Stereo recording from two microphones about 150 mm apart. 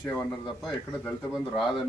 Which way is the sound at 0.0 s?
5° left (ahead or behind).